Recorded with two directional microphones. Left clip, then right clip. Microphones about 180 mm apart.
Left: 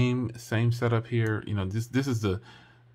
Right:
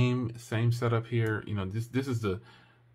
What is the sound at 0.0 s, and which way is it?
Speech, 15° left (ahead or behind).